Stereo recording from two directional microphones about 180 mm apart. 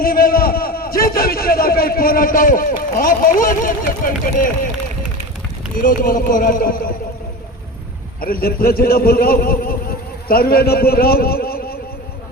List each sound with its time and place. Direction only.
0.0 s a man's voice: 55° left (ahead or behind)
5.8 s a man's voice: 50° left (ahead or behind)
8.2 s a man's voice: 55° left (ahead or behind)